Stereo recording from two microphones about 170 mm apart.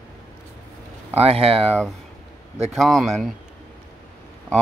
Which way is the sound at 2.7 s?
Centre (ahead or behind).